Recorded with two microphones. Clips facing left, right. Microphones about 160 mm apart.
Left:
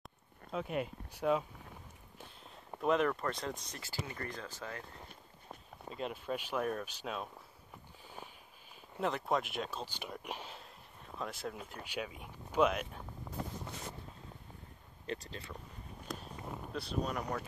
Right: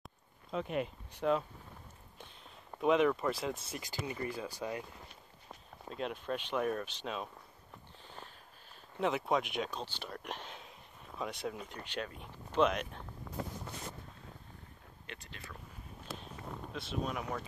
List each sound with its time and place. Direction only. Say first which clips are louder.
0.0 s a sound: left 1 dB; centre (ahead or behind)
2.8 s speech: right 3 dB; centre (ahead or behind)
5.5 s speech: even; centre (ahead or behind)
8.9 s speech: right 2 dB; centre (ahead or behind)
15.0 s speech: left 9 dB; 35° left (ahead or behind)
16.1 s run: left 2 dB; 5° right (ahead or behind)
16.7 s speech: left 1 dB; centre (ahead or behind)